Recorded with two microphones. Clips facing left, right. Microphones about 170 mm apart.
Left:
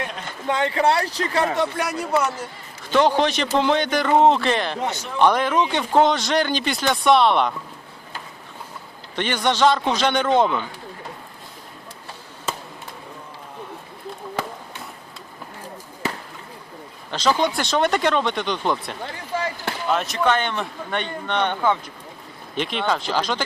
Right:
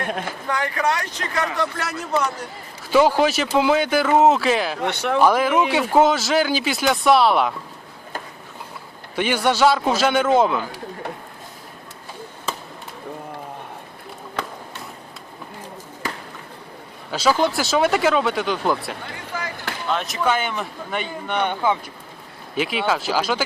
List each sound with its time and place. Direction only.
0.0 s a sound: 55° right (ahead or behind)
0.4 s speech: 25° left (ahead or behind)
1.8 s a man's voice: 10° left (ahead or behind)
2.9 s a man's voice: 5° right (ahead or behind)
4.9 s speech: 65° right (ahead or behind)
5.2 s a man's voice: 5° right (ahead or behind)
9.1 s a man's voice: 10° right (ahead or behind)
17.1 s a man's voice: 5° right (ahead or behind)
19.3 s speech: 30° left (ahead or behind)
19.9 s a man's voice: centre (ahead or behind)